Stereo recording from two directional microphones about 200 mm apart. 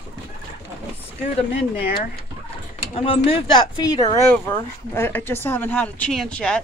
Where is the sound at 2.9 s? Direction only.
30° left (ahead or behind).